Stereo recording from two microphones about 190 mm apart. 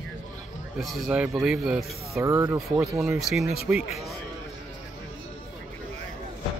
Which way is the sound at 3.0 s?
Centre (ahead or behind).